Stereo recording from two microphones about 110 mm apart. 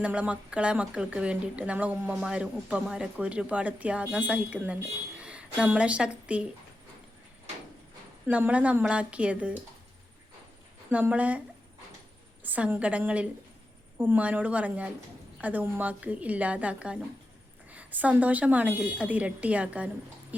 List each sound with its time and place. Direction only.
0.0 s a woman's voice: 10° right (ahead or behind)
8.3 s a woman's voice: 15° right (ahead or behind)
10.9 s a woman's voice: 15° right (ahead or behind)